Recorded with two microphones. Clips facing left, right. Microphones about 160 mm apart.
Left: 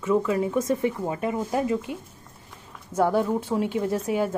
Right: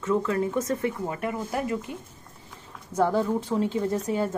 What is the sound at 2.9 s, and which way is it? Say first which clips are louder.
Speech: left 1 dB; 5° left (ahead or behind).